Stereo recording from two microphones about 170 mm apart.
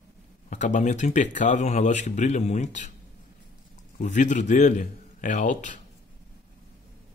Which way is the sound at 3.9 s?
45° left (ahead or behind).